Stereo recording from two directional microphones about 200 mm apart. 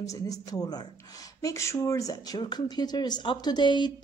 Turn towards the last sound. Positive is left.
turn(degrees=20)  # may be behind; listen again after turning